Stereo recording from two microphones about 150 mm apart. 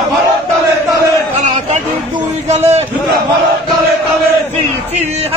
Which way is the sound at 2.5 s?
45° right (ahead or behind).